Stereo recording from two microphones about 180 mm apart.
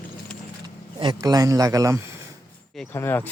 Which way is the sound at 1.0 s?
25° right (ahead or behind).